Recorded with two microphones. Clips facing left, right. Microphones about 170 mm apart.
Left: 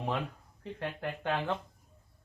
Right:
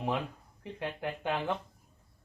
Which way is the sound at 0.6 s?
15° right (ahead or behind).